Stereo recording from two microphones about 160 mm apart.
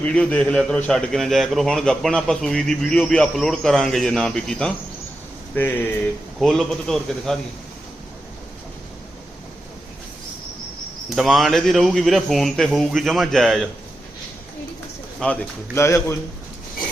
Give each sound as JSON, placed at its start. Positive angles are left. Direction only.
{"t": 0.0, "sound": "a man's voice", "side_deg": 10}
{"t": 11.1, "sound": "a man's voice", "side_deg": 0}
{"t": 15.2, "sound": "a man's voice", "side_deg": 10}